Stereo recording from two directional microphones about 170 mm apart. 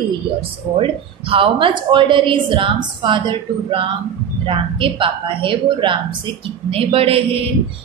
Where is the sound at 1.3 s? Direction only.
30° right (ahead or behind).